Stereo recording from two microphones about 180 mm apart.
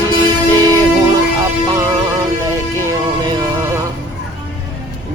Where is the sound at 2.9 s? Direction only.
20° right (ahead or behind).